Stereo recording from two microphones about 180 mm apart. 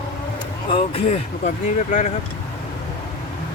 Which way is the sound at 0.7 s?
35° left (ahead or behind).